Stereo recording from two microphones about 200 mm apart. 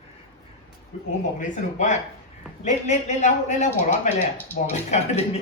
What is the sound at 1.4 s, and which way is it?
A man's voice, 40° left (ahead or behind).